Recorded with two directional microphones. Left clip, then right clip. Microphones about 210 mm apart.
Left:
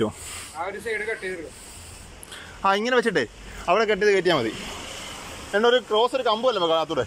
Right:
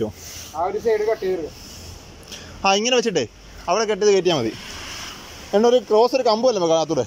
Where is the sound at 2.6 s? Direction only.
10° right (ahead or behind).